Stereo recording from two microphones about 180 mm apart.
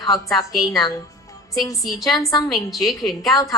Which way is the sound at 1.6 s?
20° left (ahead or behind).